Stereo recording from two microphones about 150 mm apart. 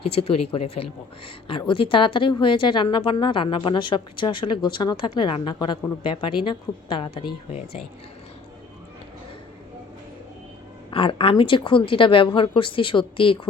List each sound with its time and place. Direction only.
0.0 s a woman's voice: 40° left (ahead or behind)
10.9 s a woman's voice: 35° left (ahead or behind)